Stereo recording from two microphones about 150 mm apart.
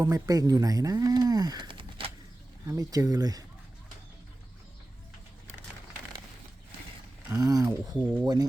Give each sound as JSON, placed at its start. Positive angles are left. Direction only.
{"t": 0.0, "sound": "speech", "side_deg": -25}
{"t": 2.6, "sound": "speech", "side_deg": -25}
{"t": 7.3, "sound": "speech", "side_deg": -25}